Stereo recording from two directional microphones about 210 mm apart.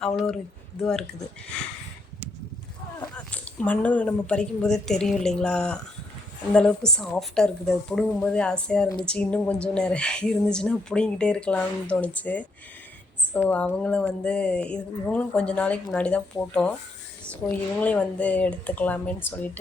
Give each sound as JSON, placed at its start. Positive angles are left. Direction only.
{"t": 0.0, "sound": "speech", "side_deg": 5}
{"t": 3.2, "sound": "speech", "side_deg": 5}